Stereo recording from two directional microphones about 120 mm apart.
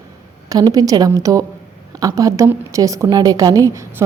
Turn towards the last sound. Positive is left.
turn(degrees=-25)  # may be behind; listen again after turning